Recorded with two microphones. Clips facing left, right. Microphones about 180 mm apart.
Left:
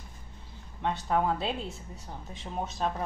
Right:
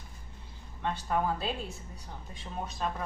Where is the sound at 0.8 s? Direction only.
20° left (ahead or behind).